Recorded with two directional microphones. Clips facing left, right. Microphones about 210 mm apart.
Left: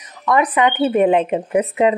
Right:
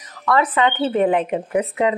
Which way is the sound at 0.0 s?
20° left (ahead or behind).